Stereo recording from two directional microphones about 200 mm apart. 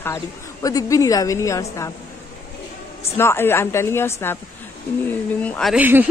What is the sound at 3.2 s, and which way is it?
A woman's voice, 10° left (ahead or behind).